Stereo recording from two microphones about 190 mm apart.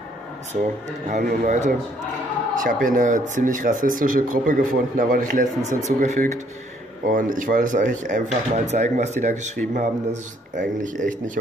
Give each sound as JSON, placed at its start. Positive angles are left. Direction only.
{"t": 1.0, "sound": "speech", "side_deg": -45}